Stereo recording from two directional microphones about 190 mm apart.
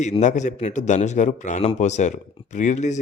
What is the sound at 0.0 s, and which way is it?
Speech, 40° left (ahead or behind).